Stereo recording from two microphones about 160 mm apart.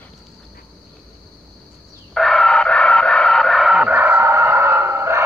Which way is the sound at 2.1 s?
Centre (ahead or behind).